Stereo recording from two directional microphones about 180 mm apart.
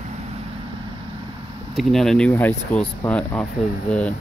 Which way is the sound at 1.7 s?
Centre (ahead or behind).